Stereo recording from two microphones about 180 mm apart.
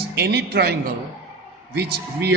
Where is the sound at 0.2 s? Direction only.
65° right (ahead or behind).